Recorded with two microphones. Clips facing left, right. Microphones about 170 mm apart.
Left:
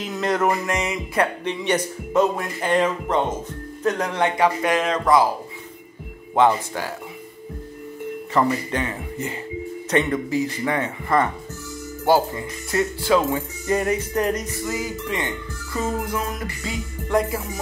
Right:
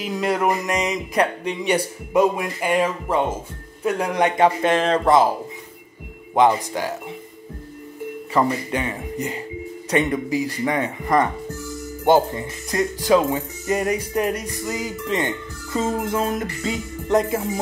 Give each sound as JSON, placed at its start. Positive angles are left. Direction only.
{"t": 0.0, "sound": "speech", "side_deg": -10}
{"t": 4.6, "sound": "speech", "side_deg": -30}
{"t": 6.3, "sound": "speech", "side_deg": -15}
{"t": 8.3, "sound": "speech", "side_deg": -10}